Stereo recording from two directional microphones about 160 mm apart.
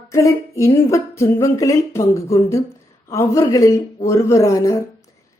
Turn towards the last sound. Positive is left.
turn(degrees=20)  # may be behind; listen again after turning